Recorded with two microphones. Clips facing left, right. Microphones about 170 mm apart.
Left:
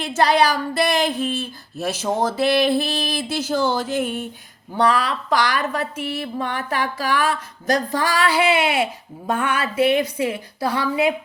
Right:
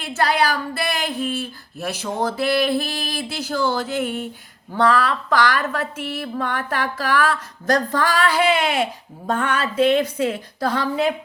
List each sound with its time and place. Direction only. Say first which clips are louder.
0.0 s speech: left 3 dB; 20° left (ahead or behind)